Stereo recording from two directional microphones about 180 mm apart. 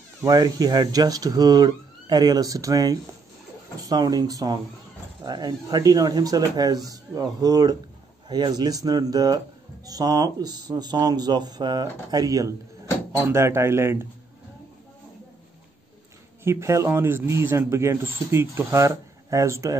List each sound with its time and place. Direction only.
0.2 s speech: 20° right (ahead or behind)
16.4 s speech: 15° right (ahead or behind)